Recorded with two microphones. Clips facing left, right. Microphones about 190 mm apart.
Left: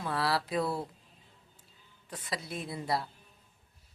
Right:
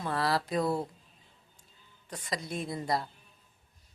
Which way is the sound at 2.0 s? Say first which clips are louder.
Right 2 dB; 5° left (ahead or behind).